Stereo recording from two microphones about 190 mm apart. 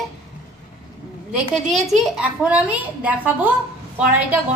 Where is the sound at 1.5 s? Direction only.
Centre (ahead or behind).